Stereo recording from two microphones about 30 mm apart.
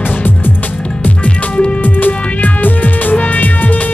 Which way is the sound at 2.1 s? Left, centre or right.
Left.